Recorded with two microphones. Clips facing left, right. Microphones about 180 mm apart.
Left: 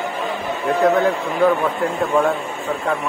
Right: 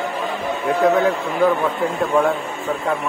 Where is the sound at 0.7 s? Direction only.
5° right (ahead or behind).